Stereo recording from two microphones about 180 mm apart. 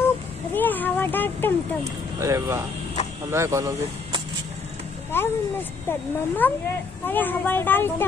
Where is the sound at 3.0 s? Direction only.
40° left (ahead or behind).